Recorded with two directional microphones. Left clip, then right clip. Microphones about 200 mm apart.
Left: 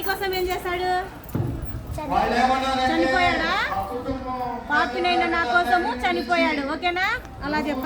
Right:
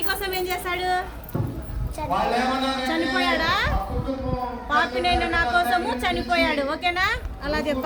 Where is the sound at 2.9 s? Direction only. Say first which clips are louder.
Left 2 dB; 45° right (ahead or behind).